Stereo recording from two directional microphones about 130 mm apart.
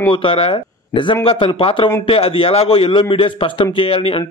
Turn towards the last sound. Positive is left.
turn(degrees=45)  # may be behind; listen again after turning